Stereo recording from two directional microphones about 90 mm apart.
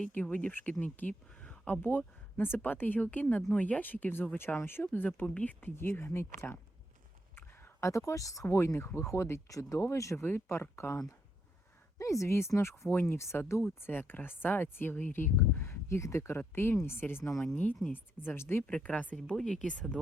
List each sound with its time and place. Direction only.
0.0 s speech: 15° left (ahead or behind)
18.6 s speech: 10° left (ahead or behind)